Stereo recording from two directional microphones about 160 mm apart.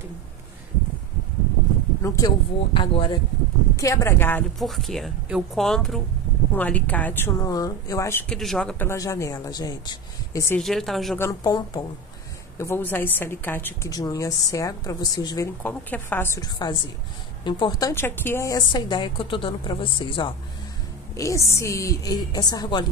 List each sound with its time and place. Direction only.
2.0 s speech: 20° left (ahead or behind)
3.7 s a woman's voice: 20° left (ahead or behind)
4.6 s a woman's voice: centre (ahead or behind); by 8.3 s 15° left (ahead or behind)
8.3 s speech: centre (ahead or behind)
8.8 s speech: 20° left (ahead or behind)
10.6 s speech: centre (ahead or behind)
11.1 s a woman's voice: 15° left (ahead or behind)
12.5 s a woman's voice: 15° left (ahead or behind)
15.6 s a woman's voice: 10° left (ahead or behind)
16.3 s a woman's voice: 25° left (ahead or behind)
18.6 s speech: 30° left (ahead or behind)
21.2 s speech: 20° left (ahead or behind)